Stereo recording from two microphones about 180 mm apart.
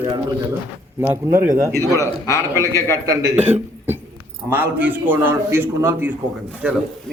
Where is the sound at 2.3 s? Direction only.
15° left (ahead or behind).